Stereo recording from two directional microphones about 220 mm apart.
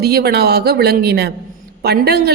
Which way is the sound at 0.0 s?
45° right (ahead or behind).